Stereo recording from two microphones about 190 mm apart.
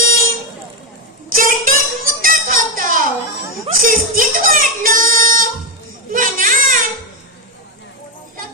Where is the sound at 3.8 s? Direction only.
45° right (ahead or behind).